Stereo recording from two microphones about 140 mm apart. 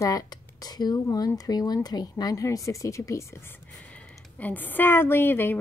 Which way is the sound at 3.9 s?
10° left (ahead or behind).